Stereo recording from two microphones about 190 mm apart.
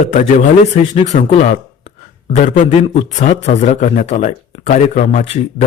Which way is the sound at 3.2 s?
40° left (ahead or behind).